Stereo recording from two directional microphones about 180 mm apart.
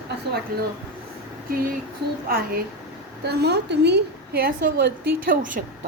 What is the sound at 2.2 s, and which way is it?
A woman's voice, 55° right (ahead or behind).